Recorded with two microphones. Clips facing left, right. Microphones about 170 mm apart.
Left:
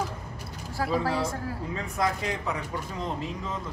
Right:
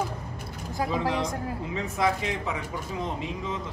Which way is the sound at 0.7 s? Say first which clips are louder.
Even; 20° right (ahead or behind).